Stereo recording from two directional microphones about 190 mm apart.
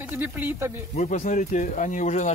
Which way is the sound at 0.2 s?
10° right (ahead or behind).